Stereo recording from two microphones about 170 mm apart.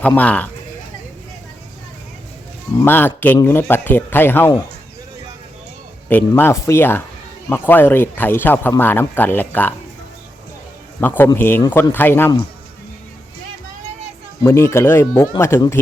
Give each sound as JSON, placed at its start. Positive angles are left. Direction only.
{"t": 0.2, "sound": "speech", "side_deg": 10}
{"t": 2.8, "sound": "speech", "side_deg": 10}
{"t": 6.1, "sound": "speech", "side_deg": 10}
{"t": 11.0, "sound": "speech", "side_deg": 10}
{"t": 14.4, "sound": "speech", "side_deg": 15}